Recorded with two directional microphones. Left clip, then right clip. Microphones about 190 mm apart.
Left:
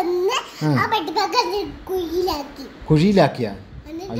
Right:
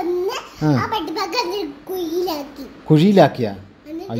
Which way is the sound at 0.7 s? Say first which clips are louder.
Left 2 dB; 15° left (ahead or behind).